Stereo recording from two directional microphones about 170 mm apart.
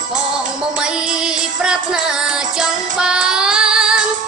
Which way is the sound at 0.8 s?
5° right (ahead or behind).